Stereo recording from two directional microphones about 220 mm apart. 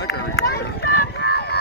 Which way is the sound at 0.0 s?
45° left (ahead or behind).